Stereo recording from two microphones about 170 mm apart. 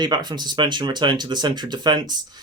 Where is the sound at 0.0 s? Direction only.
25° right (ahead or behind).